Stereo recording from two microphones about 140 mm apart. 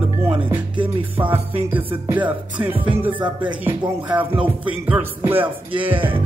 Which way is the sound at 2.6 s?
25° right (ahead or behind).